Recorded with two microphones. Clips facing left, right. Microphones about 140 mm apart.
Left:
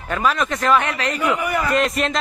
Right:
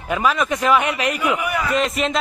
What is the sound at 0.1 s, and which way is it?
A man's voice, 5° right (ahead or behind).